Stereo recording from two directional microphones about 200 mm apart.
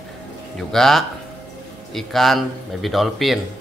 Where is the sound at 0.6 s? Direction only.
Centre (ahead or behind).